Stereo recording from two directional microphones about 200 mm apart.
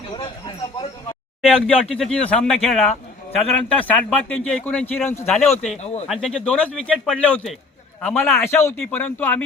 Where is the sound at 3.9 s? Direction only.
5° left (ahead or behind).